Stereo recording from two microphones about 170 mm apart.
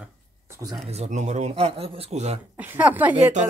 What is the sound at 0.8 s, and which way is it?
Speech, 40° right (ahead or behind).